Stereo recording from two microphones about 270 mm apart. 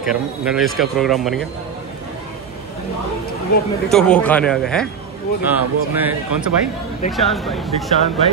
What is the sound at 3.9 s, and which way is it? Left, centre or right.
Speech, centre.